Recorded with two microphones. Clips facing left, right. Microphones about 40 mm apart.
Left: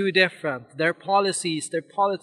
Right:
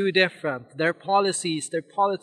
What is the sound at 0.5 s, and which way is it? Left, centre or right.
Speech, centre.